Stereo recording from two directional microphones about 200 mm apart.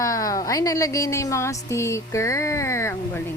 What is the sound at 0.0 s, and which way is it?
A woman's voice, 15° left (ahead or behind).